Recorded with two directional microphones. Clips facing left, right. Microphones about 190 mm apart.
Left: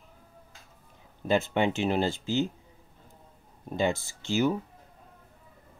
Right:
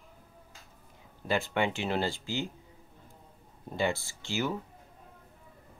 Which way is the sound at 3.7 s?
20° left (ahead or behind).